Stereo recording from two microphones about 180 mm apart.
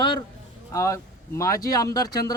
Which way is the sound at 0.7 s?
15° left (ahead or behind).